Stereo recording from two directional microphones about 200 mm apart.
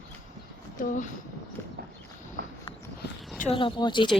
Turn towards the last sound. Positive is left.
turn(degrees=25)  # may be behind; listen again after turning